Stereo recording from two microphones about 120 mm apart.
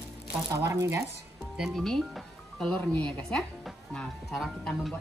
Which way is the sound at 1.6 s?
Centre (ahead or behind).